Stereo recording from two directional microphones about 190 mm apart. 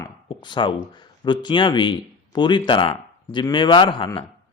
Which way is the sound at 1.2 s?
25° left (ahead or behind).